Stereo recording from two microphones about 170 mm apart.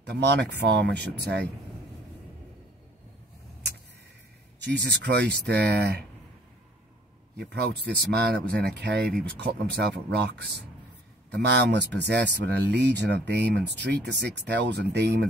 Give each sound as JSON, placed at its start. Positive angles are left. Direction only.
{"t": 0.1, "sound": "speech", "side_deg": -85}
{"t": 4.6, "sound": "speech", "side_deg": -90}
{"t": 7.3, "sound": "speech", "side_deg": -80}
{"t": 9.4, "sound": "speech", "side_deg": -75}
{"t": 11.3, "sound": "speech", "side_deg": -90}